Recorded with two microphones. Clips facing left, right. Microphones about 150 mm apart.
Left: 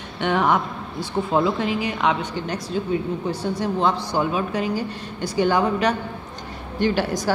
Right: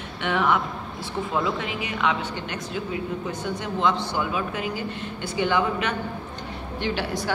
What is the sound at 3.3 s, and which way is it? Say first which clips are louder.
A woman's voice: left 5 dB; 35° left (ahead or behind).